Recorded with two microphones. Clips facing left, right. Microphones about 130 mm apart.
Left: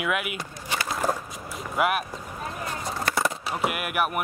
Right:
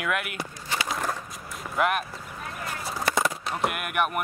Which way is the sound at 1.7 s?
5° left (ahead or behind).